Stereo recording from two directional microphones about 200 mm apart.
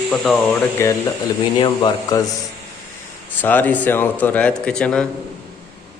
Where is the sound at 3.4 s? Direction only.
10° left (ahead or behind).